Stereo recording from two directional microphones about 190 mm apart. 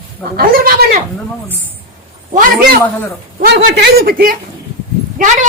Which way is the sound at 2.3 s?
45° right (ahead or behind).